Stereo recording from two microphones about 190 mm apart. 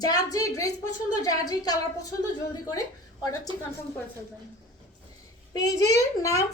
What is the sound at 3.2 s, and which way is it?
Speech, 20° left (ahead or behind).